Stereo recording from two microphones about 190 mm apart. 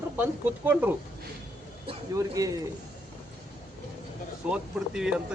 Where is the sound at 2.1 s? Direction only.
15° right (ahead or behind).